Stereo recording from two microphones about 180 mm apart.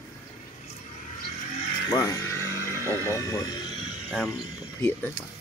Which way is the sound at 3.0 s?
15° left (ahead or behind).